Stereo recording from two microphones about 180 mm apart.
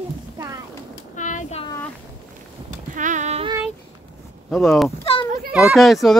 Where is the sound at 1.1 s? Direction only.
45° left (ahead or behind).